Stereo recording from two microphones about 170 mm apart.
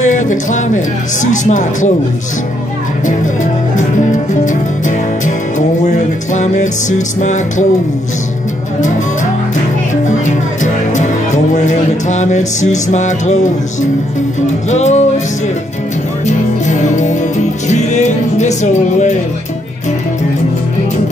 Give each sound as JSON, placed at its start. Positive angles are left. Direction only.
{"t": 0.0, "sound": "speech", "side_deg": 45}
{"t": 3.7, "sound": "music", "side_deg": 45}
{"t": 10.0, "sound": "music", "side_deg": 45}
{"t": 12.9, "sound": "speech", "side_deg": 45}
{"t": 14.7, "sound": "speech", "side_deg": 40}
{"t": 16.3, "sound": "music", "side_deg": 45}